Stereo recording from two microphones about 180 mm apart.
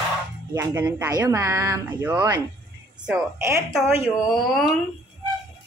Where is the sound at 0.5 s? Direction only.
15° right (ahead or behind).